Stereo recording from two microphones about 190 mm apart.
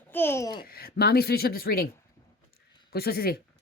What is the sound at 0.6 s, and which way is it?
Speech, 55° left (ahead or behind).